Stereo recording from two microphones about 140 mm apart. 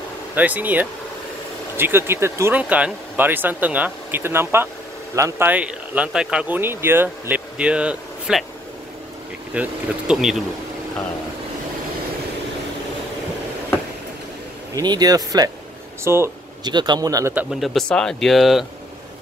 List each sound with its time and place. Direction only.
0.4 s speech: 10° right (ahead or behind)
9.5 s speech: 5° right (ahead or behind)
14.8 s speech: 30° right (ahead or behind)
16.6 s speech: 30° right (ahead or behind)
17.3 s speech: 10° right (ahead or behind)
17.6 s speech: 5° left (ahead or behind)